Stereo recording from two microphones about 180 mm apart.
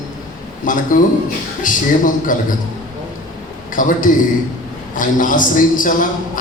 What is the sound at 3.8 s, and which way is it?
A man's voice, 50° left (ahead or behind).